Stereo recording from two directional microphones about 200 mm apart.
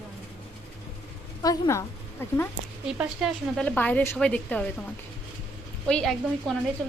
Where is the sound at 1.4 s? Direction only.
15° left (ahead or behind).